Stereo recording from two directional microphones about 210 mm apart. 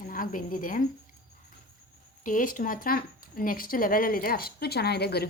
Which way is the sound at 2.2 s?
40° left (ahead or behind).